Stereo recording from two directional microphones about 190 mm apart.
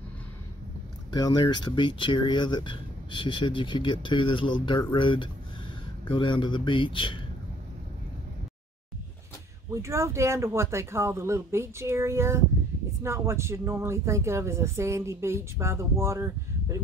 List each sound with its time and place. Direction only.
1.1 s speech: 20° left (ahead or behind)
9.7 s speech: 15° right (ahead or behind)